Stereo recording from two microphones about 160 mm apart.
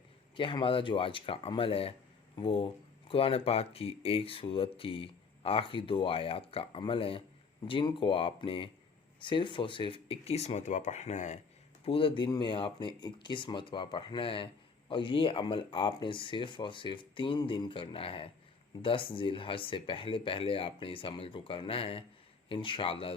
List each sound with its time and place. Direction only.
0.3 s speech: 30° left (ahead or behind); by 11.3 s 50° left (ahead or behind)
11.9 s speech: 35° left (ahead or behind)